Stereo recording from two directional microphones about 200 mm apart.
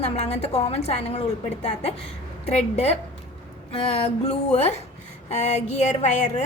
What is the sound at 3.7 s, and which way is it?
A woman's voice, 30° left (ahead or behind).